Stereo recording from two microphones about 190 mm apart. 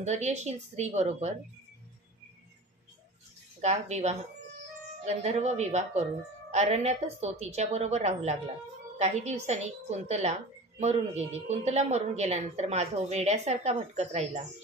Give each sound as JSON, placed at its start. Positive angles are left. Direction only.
{"t": 0.0, "sound": "a woman's voice", "side_deg": -35}
{"t": 3.6, "sound": "a woman's voice", "side_deg": -35}